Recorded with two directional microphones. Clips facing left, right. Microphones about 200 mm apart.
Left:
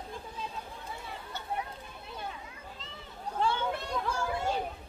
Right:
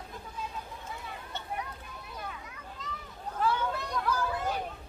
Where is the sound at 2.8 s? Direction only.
25° left (ahead or behind).